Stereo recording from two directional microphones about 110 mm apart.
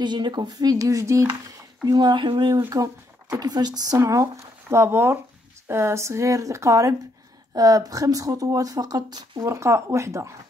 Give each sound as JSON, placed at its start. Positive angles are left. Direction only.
{"t": 0.0, "sound": "speech", "side_deg": -45}
{"t": 1.9, "sound": "speech", "side_deg": -40}